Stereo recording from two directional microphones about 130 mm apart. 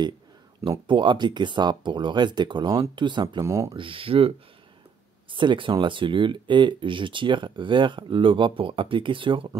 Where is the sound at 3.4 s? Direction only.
20° right (ahead or behind).